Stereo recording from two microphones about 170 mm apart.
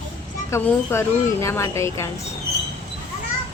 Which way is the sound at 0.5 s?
15° left (ahead or behind).